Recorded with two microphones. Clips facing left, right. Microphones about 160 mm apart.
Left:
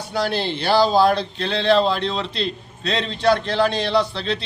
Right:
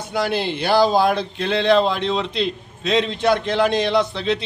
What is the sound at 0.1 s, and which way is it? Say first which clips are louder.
Speech: right 1 dB; 15° right (ahead or behind).